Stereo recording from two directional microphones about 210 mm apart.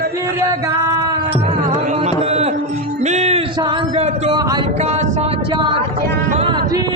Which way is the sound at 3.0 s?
35° right (ahead or behind).